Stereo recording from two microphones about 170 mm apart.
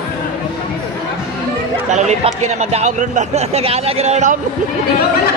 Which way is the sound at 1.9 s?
40° right (ahead or behind).